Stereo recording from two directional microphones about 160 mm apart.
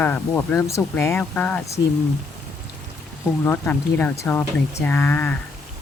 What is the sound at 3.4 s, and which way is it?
Speech, 10° left (ahead or behind).